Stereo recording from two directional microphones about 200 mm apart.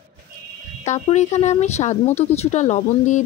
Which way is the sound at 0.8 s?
35° left (ahead or behind).